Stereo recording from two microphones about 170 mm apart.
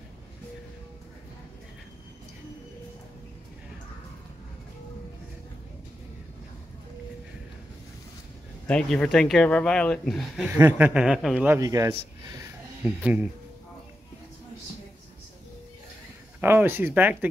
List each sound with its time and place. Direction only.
8.6 s speech: 5° left (ahead or behind)
10.5 s speech: 15° right (ahead or behind)
10.9 s speech: 5° right (ahead or behind)
11.5 s a man's voice: 20° right (ahead or behind)
12.8 s speech: 10° right (ahead or behind)
16.3 s speech: 15° right (ahead or behind)